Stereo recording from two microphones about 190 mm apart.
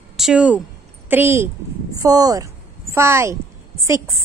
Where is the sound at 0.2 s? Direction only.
5° right (ahead or behind).